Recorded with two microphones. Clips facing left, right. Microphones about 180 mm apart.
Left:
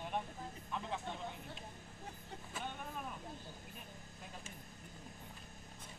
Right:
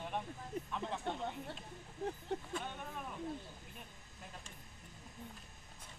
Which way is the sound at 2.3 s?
65° right (ahead or behind).